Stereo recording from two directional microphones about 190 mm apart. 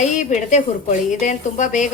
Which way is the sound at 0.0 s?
40° left (ahead or behind).